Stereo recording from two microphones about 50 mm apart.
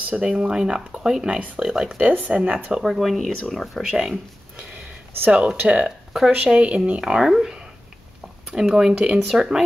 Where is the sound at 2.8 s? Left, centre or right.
Centre.